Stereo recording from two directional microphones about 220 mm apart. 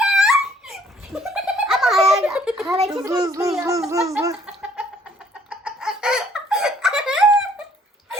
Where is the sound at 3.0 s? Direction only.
15° right (ahead or behind).